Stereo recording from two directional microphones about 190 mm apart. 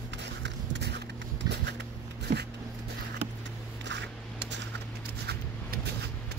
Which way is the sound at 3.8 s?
70° right (ahead or behind).